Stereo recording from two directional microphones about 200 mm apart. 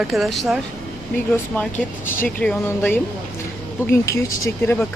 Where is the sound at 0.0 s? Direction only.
Centre (ahead or behind).